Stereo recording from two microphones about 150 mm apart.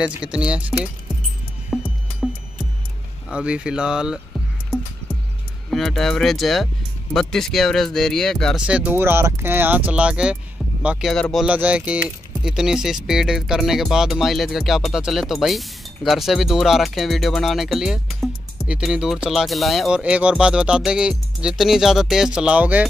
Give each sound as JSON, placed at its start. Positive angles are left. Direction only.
{"t": 0.0, "sound": "speech", "side_deg": -5}
{"t": 1.7, "sound": "music", "side_deg": 0}
{"t": 3.3, "sound": "speech", "side_deg": -5}
{"t": 5.7, "sound": "speech", "side_deg": 0}
{"t": 8.6, "sound": "speech", "side_deg": -10}
{"t": 11.4, "sound": "speech", "side_deg": -10}